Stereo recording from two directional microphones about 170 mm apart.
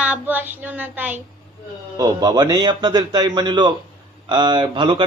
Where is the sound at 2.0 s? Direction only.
20° right (ahead or behind).